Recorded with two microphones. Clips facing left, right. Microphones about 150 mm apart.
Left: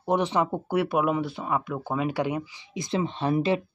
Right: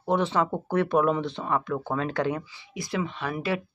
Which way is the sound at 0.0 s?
15° left (ahead or behind).